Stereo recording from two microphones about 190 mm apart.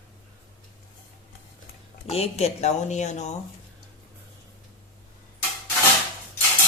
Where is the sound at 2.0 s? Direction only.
35° left (ahead or behind).